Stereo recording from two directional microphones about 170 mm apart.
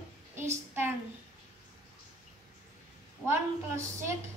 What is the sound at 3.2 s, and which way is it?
Speech, 15° right (ahead or behind).